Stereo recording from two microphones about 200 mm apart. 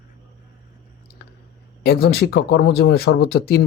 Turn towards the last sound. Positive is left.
turn(degrees=55)  # may be behind; listen again after turning